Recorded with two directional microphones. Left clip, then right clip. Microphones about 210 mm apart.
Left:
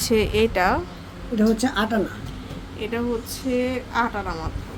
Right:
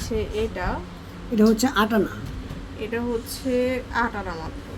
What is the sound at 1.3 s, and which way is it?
Speech, 30° right (ahead or behind).